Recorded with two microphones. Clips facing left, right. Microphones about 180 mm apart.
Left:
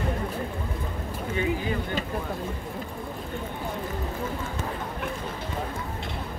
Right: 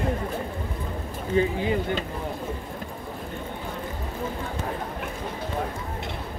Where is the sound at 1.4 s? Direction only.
35° right (ahead or behind).